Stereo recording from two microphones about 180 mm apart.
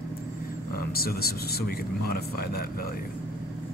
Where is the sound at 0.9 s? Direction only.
55° left (ahead or behind).